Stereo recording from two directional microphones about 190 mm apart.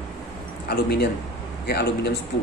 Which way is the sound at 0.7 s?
55° left (ahead or behind).